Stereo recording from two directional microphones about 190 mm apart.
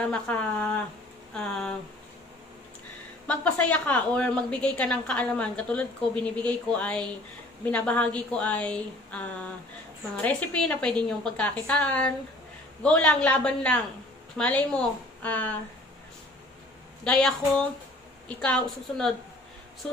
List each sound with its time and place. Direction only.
0.1 s a woman's voice: 5° left (ahead or behind)
3.3 s a woman's voice: 5° left (ahead or behind)
17.0 s a woman's voice: 5° left (ahead or behind)